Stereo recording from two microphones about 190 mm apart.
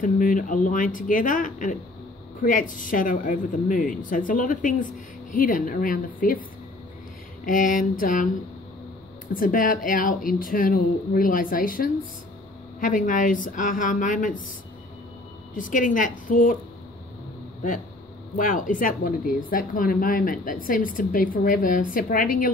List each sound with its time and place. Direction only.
0.0 s speech: 45° left (ahead or behind)
7.4 s speech: 45° left (ahead or behind)
9.3 s speech: 45° left (ahead or behind)
15.5 s speech: 45° left (ahead or behind)
18.3 s speech: 45° left (ahead or behind)